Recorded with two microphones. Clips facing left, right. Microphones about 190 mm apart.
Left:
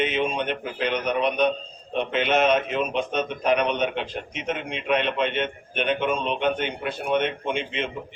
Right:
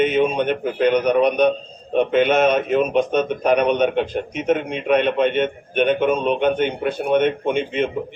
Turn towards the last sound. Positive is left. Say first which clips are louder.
# right 7 dB
turn(degrees=-45)  # may be behind; listen again after turning